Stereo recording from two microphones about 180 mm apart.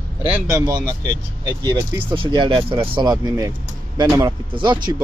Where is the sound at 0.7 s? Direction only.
20° right (ahead or behind).